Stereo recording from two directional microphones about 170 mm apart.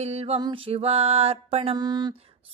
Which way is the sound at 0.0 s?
40° right (ahead or behind).